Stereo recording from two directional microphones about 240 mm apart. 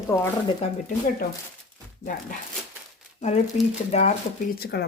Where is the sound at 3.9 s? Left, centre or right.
Left.